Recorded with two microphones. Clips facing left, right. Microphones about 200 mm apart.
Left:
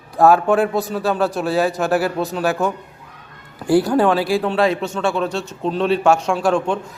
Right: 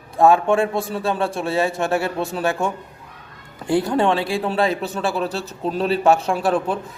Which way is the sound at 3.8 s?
5° left (ahead or behind).